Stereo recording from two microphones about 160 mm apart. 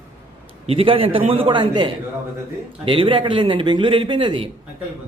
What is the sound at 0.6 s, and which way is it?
A man's voice, 40° right (ahead or behind).